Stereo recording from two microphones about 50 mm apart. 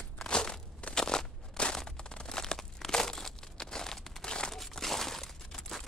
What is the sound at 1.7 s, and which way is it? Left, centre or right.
Crumpling, centre.